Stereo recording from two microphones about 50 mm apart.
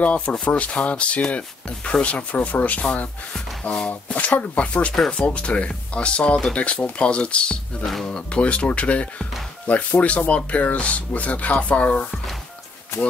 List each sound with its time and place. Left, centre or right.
0.0 s speech: left
3.9 s speech: left
7.8 s speech: centre
8.1 s speech: left